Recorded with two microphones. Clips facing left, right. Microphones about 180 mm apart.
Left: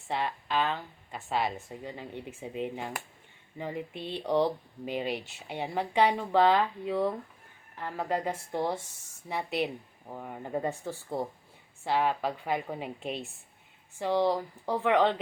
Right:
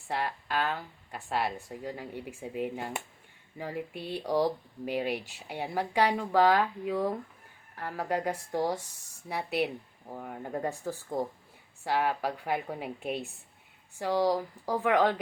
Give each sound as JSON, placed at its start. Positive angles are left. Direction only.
{"t": 0.1, "sound": "speech", "side_deg": -5}
{"t": 10.8, "sound": "speech", "side_deg": -10}